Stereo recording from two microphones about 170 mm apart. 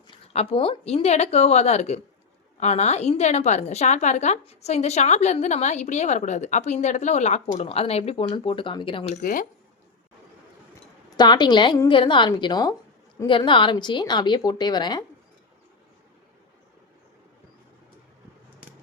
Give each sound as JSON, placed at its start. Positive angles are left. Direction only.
{"t": 0.1, "sound": "a woman's voice", "side_deg": 30}
{"t": 9.0, "sound": "speech", "side_deg": 55}
{"t": 11.2, "sound": "a woman's voice", "side_deg": 25}